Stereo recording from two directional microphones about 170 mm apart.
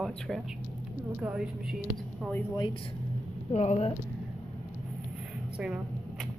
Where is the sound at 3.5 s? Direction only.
40° left (ahead or behind).